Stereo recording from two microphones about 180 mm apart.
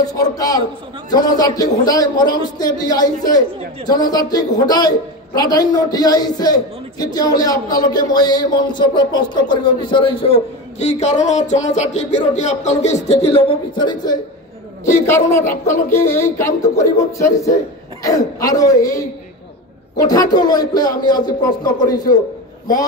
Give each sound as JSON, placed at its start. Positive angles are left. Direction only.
{"t": 0.0, "sound": "a man's voice", "side_deg": 20}
{"t": 15.0, "sound": "a woman's voice", "side_deg": 15}